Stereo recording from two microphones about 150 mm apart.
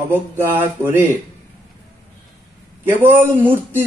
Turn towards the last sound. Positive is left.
turn(degrees=-15)  # may be behind; listen again after turning